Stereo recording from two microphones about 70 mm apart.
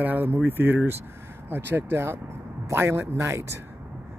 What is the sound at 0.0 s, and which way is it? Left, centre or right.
Speech, right.